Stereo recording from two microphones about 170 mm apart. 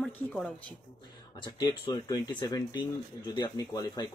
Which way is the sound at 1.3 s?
30° left (ahead or behind).